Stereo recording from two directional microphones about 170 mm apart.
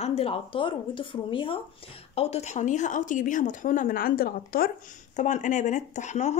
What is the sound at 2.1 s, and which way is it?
Speech, 40° left (ahead or behind).